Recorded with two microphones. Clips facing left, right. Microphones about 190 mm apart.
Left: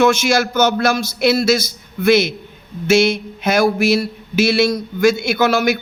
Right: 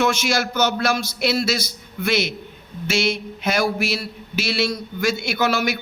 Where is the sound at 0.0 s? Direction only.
45° left (ahead or behind).